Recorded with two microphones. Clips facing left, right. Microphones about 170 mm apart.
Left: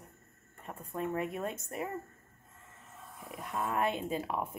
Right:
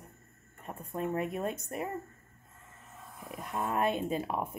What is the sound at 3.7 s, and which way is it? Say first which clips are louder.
Speech: right 2 dB; 15° right (ahead or behind).